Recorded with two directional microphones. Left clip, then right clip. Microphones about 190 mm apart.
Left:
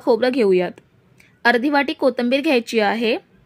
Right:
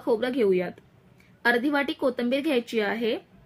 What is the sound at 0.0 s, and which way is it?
A woman's voice, 40° left (ahead or behind).